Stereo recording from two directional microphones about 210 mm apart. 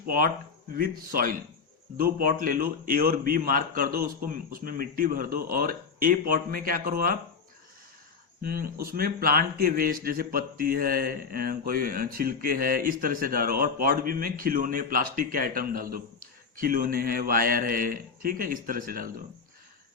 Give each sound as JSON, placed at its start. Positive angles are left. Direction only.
{"t": 0.0, "sound": "speech", "side_deg": -45}
{"t": 8.4, "sound": "speech", "side_deg": -45}